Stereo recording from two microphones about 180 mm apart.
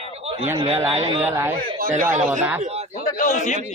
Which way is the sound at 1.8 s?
50° right (ahead or behind).